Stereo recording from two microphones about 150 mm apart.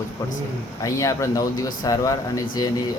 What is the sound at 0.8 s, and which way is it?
Speech, 20° left (ahead or behind).